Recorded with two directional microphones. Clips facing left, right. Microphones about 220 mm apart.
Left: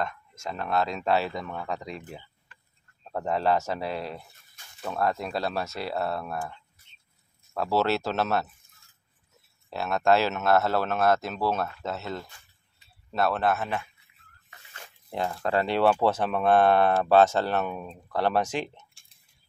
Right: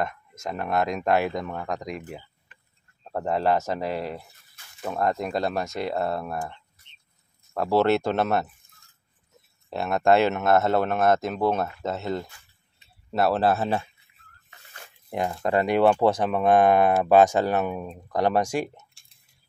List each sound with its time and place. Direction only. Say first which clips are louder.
0.0 s speech: right 3 dB; 20° right (ahead or behind)
9.7 s speech: right 3 dB; 20° right (ahead or behind)
15.0 s speech: right 3 dB; 15° right (ahead or behind)